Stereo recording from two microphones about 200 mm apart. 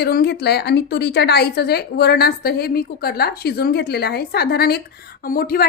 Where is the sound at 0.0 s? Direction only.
55° left (ahead or behind).